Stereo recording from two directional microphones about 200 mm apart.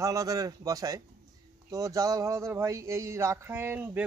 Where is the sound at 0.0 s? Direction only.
15° right (ahead or behind).